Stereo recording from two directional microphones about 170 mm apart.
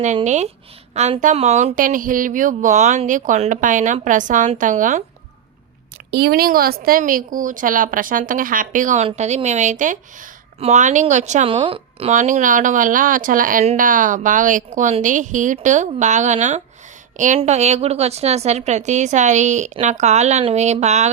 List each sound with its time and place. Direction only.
0.9 s speech: 40° right (ahead or behind)
6.1 s speech: 70° right (ahead or behind); by 12.1 s 35° right (ahead or behind)
12.1 s a woman's voice: 50° right (ahead or behind)